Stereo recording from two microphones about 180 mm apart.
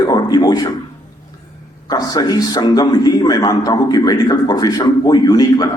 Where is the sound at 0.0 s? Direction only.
20° left (ahead or behind).